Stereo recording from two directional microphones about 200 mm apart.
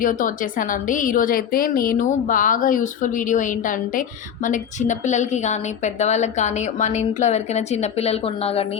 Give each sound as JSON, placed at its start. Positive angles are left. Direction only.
{"t": 0.0, "sound": "a woman's voice", "side_deg": 40}